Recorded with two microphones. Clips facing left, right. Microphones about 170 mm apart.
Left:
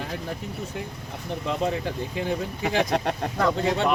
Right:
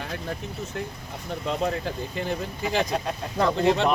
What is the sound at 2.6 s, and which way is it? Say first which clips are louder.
Speech: left 2 dB; 70° left (ahead or behind).